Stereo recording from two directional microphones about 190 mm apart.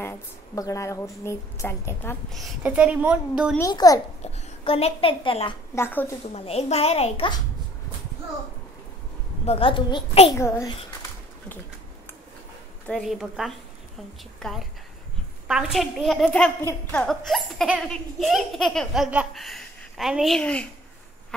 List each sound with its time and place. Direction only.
0.6 s a woman's voice: 15° left (ahead or behind)
2.2 s speech: centre (ahead or behind)
3.5 s a child's voice: 20° left (ahead or behind)
4.2 s a child's voice: 35° left (ahead or behind)
5.8 s a woman's voice: 10° left (ahead or behind)
6.3 s a child's voice: 35° left (ahead or behind)
9.5 s a child's voice: 30° left (ahead or behind)
10.4 s a woman's voice: 15° left (ahead or behind)
12.8 s a woman's voice: centre (ahead or behind)